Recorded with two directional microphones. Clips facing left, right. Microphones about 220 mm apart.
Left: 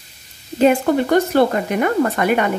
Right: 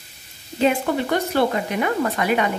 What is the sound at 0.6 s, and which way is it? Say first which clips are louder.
A woman's voice: left 5 dB; 45° left (ahead or behind).